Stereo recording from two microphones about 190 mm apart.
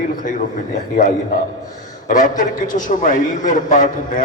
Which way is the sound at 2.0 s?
45° left (ahead or behind).